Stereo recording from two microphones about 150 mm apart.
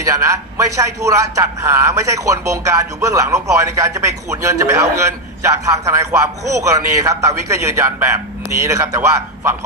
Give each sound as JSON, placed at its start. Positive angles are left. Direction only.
{"t": 0.0, "sound": "a man's voice", "side_deg": -20}